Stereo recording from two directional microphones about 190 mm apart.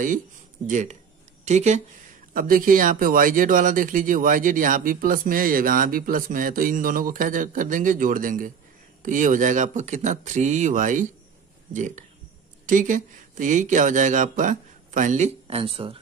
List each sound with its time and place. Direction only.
0.7 s speech: 40° right (ahead or behind)
2.3 s speech: 50° right (ahead or behind); by 16.0 s 30° right (ahead or behind)